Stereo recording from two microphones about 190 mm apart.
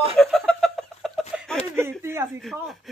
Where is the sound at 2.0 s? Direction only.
15° right (ahead or behind).